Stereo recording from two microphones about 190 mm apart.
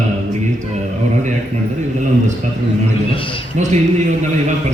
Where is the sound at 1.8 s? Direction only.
40° right (ahead or behind).